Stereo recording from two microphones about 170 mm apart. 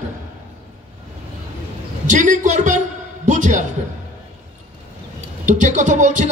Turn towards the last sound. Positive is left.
turn(degrees=-45)  # may be behind; listen again after turning